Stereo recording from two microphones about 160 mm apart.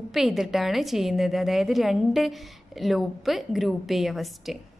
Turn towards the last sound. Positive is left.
turn(degrees=0)  # may be behind; listen again after turning